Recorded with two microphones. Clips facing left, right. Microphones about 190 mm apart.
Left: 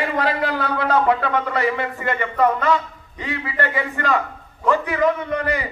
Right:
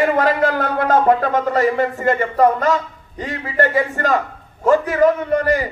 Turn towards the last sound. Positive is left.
turn(degrees=-40)  # may be behind; listen again after turning